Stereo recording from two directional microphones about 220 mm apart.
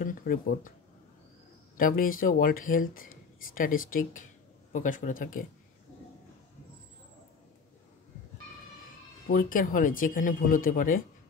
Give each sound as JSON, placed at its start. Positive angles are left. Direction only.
{"t": 0.0, "sound": "speech", "side_deg": 40}
{"t": 1.8, "sound": "speech", "side_deg": 40}
{"t": 9.3, "sound": "speech", "side_deg": 40}